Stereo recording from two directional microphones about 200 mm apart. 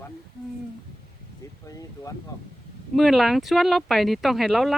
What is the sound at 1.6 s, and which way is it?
Speech, 15° left (ahead or behind).